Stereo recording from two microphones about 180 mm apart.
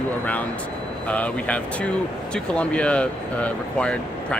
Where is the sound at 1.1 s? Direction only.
5° left (ahead or behind).